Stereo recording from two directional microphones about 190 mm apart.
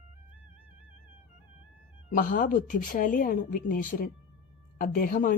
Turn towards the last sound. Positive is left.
turn(degrees=45)  # may be behind; listen again after turning